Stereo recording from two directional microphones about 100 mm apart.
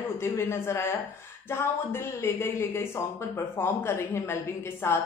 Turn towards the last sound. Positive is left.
turn(degrees=25)  # may be behind; listen again after turning